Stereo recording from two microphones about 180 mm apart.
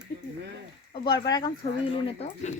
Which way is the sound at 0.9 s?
25° left (ahead or behind).